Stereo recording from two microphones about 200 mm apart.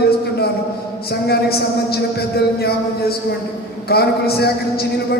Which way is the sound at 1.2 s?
50° left (ahead or behind).